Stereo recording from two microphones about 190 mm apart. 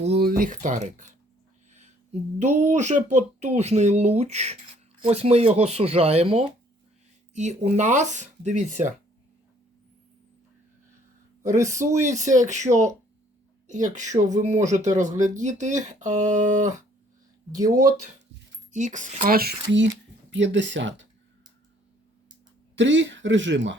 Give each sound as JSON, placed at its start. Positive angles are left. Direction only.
{"t": 0.1, "sound": "speech", "side_deg": -55}
{"t": 2.4, "sound": "speech", "side_deg": -40}
{"t": 11.9, "sound": "speech", "side_deg": -40}
{"t": 17.6, "sound": "speech", "side_deg": -20}
{"t": 18.7, "sound": "speech", "side_deg": -40}
{"t": 20.3, "sound": "speech", "side_deg": -75}
{"t": 22.7, "sound": "speech", "side_deg": -75}